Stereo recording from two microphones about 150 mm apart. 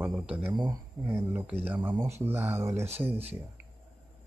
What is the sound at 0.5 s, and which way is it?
Speech, 30° right (ahead or behind).